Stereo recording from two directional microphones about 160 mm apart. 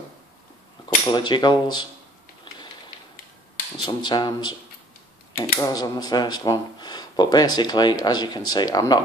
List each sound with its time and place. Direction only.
0.8 s speech: 30° left (ahead or behind)
3.8 s speech: 30° left (ahead or behind)